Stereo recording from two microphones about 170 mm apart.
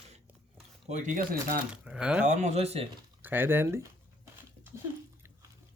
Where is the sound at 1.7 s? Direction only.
5° right (ahead or behind).